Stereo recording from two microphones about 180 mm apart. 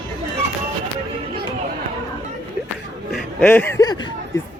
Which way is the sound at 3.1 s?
5° left (ahead or behind).